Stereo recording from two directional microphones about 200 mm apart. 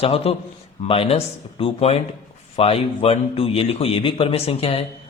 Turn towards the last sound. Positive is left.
turn(degrees=30)  # may be behind; listen again after turning